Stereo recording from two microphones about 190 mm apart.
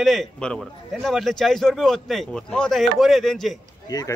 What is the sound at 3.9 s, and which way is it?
Speech, 20° left (ahead or behind).